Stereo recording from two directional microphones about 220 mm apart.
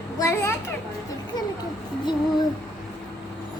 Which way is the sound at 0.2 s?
15° left (ahead or behind).